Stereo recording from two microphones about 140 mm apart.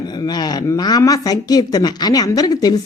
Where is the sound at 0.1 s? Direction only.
30° left (ahead or behind).